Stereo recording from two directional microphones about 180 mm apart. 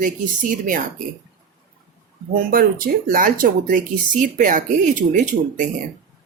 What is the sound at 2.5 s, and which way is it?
Speech, 50° right (ahead or behind).